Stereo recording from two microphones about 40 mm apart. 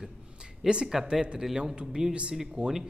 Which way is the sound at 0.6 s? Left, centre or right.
Centre.